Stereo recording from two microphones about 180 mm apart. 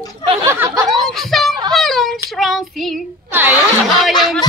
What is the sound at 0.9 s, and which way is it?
Speech, centre (ahead or behind).